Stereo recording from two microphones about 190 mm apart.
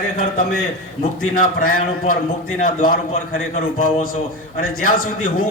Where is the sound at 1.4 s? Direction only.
45° left (ahead or behind).